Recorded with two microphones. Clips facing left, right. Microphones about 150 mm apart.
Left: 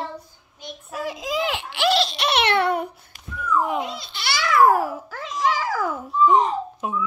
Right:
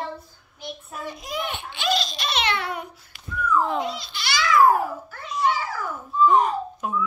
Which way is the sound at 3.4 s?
15° left (ahead or behind).